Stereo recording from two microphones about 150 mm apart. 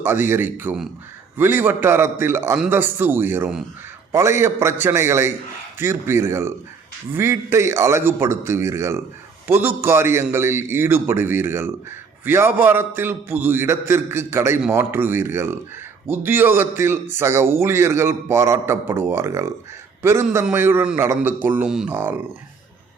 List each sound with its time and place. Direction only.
0.0 s a man's voice: 15° right (ahead or behind)